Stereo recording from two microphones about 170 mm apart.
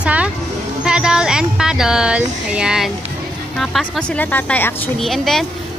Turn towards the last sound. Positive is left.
turn(degrees=0)  # may be behind; listen again after turning